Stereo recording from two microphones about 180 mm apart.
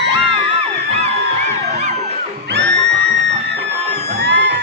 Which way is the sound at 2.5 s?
70° right (ahead or behind).